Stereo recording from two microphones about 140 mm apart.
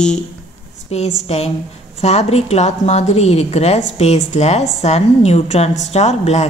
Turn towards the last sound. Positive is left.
turn(degrees=50)  # may be behind; listen again after turning